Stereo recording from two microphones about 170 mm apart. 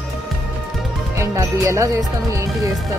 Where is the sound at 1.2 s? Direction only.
20° right (ahead or behind).